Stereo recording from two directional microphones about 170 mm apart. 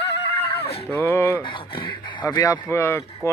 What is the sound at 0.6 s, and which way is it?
Speech, 35° left (ahead or behind).